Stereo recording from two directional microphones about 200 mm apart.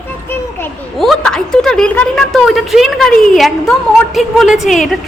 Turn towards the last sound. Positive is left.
turn(degrees=0)  # may be behind; listen again after turning